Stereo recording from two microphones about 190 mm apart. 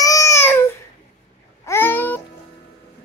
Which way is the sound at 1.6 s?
10° left (ahead or behind).